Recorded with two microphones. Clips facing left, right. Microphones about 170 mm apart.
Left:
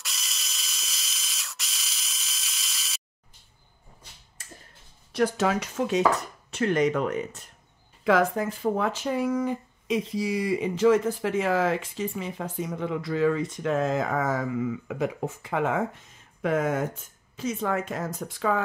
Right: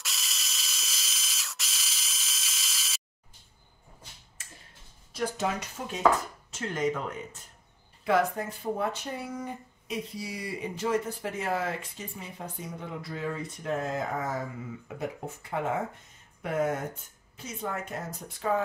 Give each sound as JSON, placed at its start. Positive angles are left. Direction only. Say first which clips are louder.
{"t": 0.0, "sound": "ratchet", "louder": "even", "side_deg": 0}
{"t": 5.1, "sound": "speech", "louder": "left 6 dB", "side_deg": 75}
{"t": 6.5, "sound": "speech", "louder": "left 7 dB", "side_deg": 70}
{"t": 8.0, "sound": "speech", "louder": "left 4 dB", "side_deg": 90}